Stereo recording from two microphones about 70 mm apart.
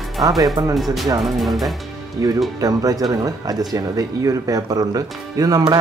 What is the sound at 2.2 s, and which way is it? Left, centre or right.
Speech, right.